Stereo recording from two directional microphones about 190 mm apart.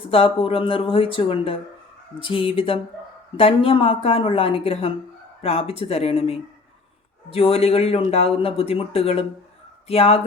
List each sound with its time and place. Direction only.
0.1 s speech: 30° left (ahead or behind)